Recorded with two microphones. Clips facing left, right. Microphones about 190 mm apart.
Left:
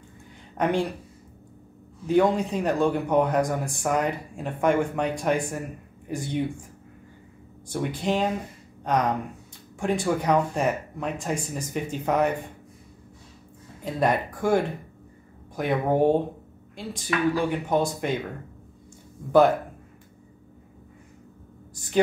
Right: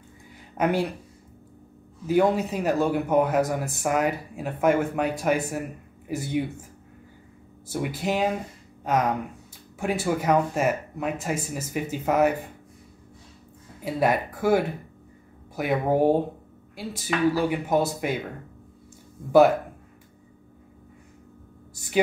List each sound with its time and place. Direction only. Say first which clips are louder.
0.6 s speech: even; 5° right (ahead or behind)
2.0 s a man's voice: even; 5° right (ahead or behind)
7.7 s a man's voice: left 1 dB; 5° right (ahead or behind)
13.8 s speech: right 1 dB; 5° right (ahead or behind)